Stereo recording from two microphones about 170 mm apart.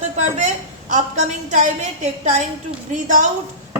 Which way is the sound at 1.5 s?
45° right (ahead or behind).